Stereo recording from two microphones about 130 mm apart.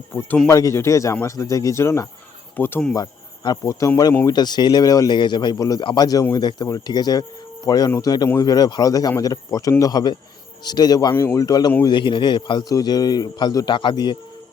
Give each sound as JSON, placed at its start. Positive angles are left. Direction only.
{"t": 0.4, "sound": "speech", "side_deg": 25}
{"t": 2.9, "sound": "speech", "side_deg": 30}
{"t": 4.3, "sound": "a man's voice", "side_deg": 30}
{"t": 11.1, "sound": "speech", "side_deg": 20}
{"t": 11.9, "sound": "a man's voice", "side_deg": 40}